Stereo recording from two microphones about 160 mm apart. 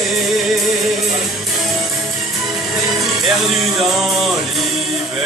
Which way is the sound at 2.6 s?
Centre (ahead or behind).